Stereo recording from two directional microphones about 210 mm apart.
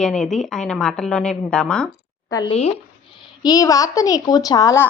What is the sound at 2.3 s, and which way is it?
Speech, 20° left (ahead or behind).